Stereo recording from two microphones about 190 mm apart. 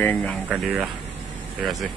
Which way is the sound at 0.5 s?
5° right (ahead or behind).